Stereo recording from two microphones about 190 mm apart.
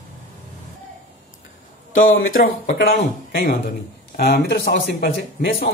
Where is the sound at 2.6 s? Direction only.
65° left (ahead or behind).